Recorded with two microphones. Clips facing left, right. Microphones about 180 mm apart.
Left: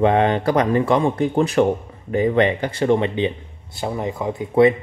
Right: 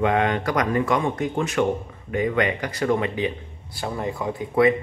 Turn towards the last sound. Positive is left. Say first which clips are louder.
# left 4 dB
turn(degrees=25)  # may be behind; listen again after turning